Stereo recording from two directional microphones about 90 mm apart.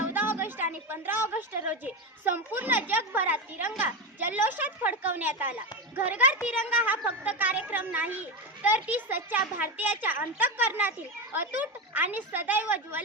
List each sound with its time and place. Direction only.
0.1 s a woman's voice: 20° right (ahead or behind)